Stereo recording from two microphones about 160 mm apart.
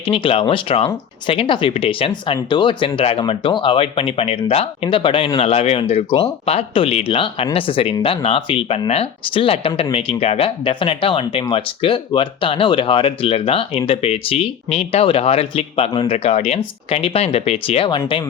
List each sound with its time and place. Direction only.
0.0 s speech: 35° left (ahead or behind)